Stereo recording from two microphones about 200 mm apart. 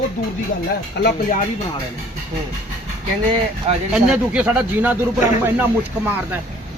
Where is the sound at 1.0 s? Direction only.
60° left (ahead or behind).